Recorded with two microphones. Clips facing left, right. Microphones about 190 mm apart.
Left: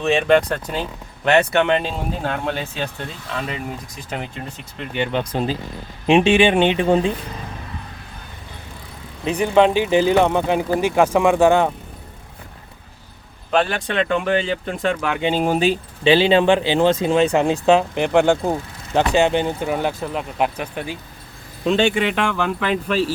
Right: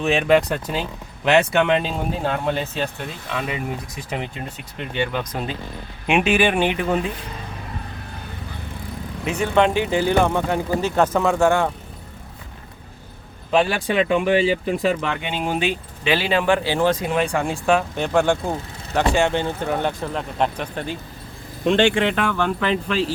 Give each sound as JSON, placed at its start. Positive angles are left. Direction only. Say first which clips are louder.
{"t": 0.0, "sound": "speech", "louder": "left 1 dB", "side_deg": -5}
{"t": 4.9, "sound": "speech", "louder": "left 3 dB", "side_deg": 25}
{"t": 9.4, "sound": "speech", "louder": "left 3 dB", "side_deg": 15}
{"t": 13.5, "sound": "speech", "louder": "right 1 dB", "side_deg": 0}
{"t": 15.2, "sound": "speech", "louder": "left 5 dB", "side_deg": 35}